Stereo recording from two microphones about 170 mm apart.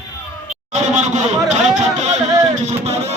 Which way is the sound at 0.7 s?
45° right (ahead or behind).